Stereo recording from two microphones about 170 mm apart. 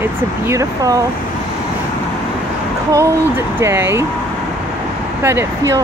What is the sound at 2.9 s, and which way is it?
Speech, 15° right (ahead or behind).